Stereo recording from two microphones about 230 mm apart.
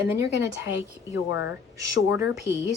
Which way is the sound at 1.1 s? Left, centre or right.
Left.